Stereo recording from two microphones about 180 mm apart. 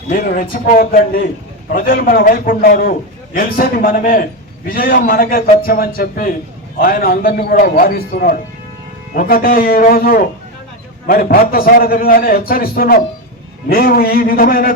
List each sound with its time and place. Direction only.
0.1 s a man's voice: 55° left (ahead or behind)